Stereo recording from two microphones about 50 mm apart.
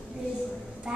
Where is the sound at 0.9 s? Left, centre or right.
Centre.